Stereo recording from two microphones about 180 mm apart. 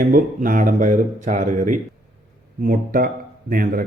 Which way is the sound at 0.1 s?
50° right (ahead or behind).